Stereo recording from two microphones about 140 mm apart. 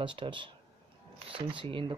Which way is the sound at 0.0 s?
35° right (ahead or behind).